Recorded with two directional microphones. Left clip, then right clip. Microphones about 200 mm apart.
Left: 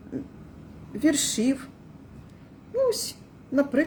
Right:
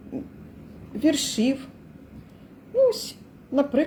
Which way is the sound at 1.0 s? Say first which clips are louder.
Right 1 dB; 45° left (ahead or behind).